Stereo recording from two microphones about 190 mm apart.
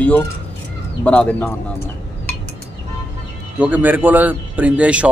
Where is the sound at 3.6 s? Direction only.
10° right (ahead or behind).